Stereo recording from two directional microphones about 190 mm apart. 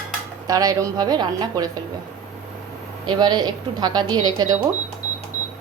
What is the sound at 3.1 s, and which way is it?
A woman's voice, 20° right (ahead or behind).